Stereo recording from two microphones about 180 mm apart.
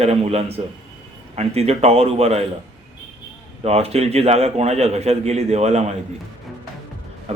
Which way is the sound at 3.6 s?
35° right (ahead or behind).